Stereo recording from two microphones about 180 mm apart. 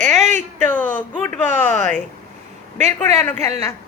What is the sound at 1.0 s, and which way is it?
Speech, 10° left (ahead or behind).